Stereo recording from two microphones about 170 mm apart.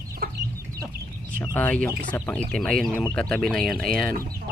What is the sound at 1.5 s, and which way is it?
Speech, 10° left (ahead or behind).